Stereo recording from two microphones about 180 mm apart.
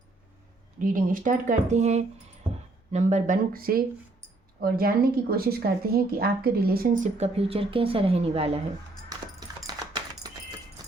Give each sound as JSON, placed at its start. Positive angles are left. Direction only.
{"t": 0.8, "sound": "speech", "side_deg": -50}
{"t": 7.2, "sound": "a woman's voice", "side_deg": -35}
{"t": 9.0, "sound": "a sound", "side_deg": -20}